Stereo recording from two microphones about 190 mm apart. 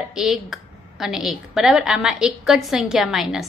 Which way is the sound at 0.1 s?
Centre (ahead or behind).